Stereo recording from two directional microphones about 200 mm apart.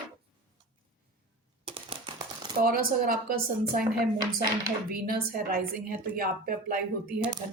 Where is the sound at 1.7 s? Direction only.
25° right (ahead or behind).